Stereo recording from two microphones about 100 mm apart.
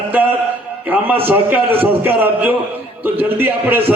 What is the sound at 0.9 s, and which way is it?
A man's voice, 20° right (ahead or behind).